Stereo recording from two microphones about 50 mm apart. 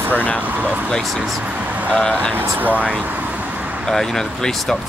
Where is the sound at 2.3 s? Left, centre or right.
Right.